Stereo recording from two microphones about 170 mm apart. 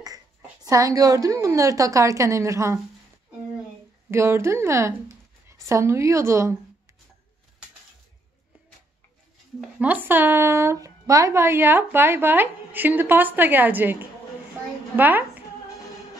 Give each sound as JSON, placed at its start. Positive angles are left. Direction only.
{"t": 0.7, "sound": "a woman's voice", "side_deg": -20}
{"t": 4.1, "sound": "a woman's voice", "side_deg": -15}
{"t": 9.6, "sound": "a woman's voice", "side_deg": -10}